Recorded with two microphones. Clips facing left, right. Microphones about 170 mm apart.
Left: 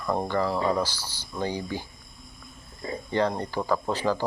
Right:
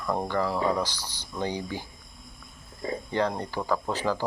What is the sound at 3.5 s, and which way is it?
Speech, 10° left (ahead or behind).